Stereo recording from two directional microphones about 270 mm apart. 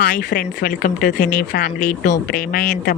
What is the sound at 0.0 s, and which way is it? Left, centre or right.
Speech, left.